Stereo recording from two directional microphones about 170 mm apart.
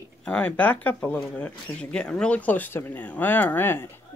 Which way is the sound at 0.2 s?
5° left (ahead or behind).